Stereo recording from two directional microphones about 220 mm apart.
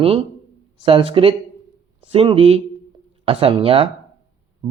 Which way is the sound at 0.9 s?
25° right (ahead or behind).